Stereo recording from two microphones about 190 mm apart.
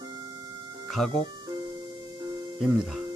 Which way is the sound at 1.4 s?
20° right (ahead or behind).